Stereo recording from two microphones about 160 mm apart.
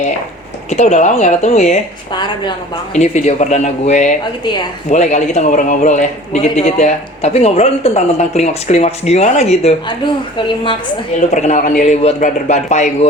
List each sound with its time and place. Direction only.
0.7 s a man's voice: 45° left (ahead or behind)
2.1 s a woman's voice: 30° left (ahead or behind)
2.9 s a man's voice: 45° left (ahead or behind)
10.3 s a woman's voice: 30° left (ahead or behind)
11.3 s a man's voice: 45° left (ahead or behind)